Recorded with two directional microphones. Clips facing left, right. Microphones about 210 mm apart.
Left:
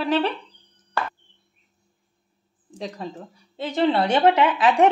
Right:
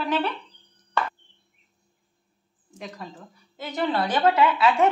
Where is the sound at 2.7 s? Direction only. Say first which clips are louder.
Left 6 dB; 30° left (ahead or behind).